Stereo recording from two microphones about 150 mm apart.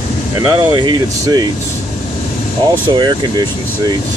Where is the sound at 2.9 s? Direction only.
30° right (ahead or behind).